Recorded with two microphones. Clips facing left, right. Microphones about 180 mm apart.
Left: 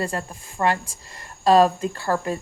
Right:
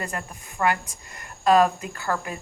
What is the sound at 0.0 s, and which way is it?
Speech, 30° left (ahead or behind).